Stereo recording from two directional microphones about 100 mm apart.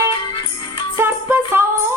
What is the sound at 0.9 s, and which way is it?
Music, 25° right (ahead or behind).